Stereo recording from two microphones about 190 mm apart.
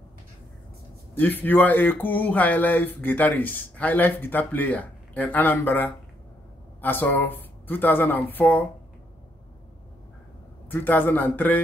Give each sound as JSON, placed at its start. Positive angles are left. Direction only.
{"t": 1.1, "sound": "speech", "side_deg": 10}
{"t": 10.7, "sound": "speech", "side_deg": 10}